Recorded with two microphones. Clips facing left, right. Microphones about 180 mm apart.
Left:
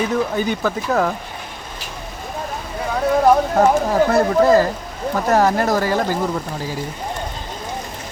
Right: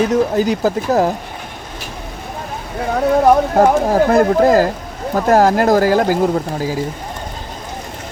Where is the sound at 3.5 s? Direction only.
40° right (ahead or behind).